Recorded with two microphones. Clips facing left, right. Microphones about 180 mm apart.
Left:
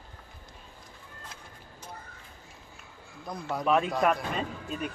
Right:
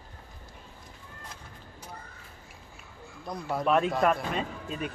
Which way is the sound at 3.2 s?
Centre (ahead or behind).